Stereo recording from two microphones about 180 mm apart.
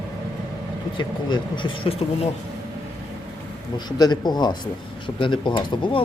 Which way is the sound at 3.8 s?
20° left (ahead or behind).